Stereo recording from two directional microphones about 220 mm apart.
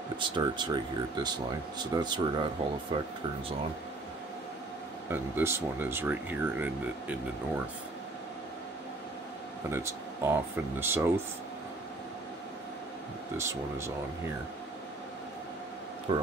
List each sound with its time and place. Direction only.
0.2 s speech: 20° right (ahead or behind)
5.1 s speech: 10° right (ahead or behind)
9.7 s speech: 10° right (ahead or behind)
13.4 s speech: 10° right (ahead or behind)
16.1 s speech: 25° right (ahead or behind)